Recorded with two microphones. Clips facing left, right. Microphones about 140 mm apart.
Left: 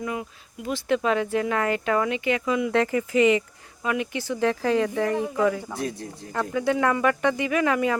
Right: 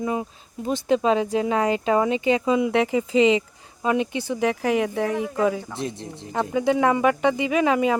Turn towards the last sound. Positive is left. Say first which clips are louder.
# right 3 dB
turn(degrees=-20)  # may be behind; listen again after turning